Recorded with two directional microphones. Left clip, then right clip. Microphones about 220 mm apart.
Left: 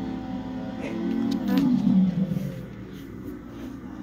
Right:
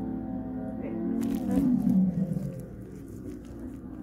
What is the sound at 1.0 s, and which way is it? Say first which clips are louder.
Music: left 3 dB; 35° left (ahead or behind).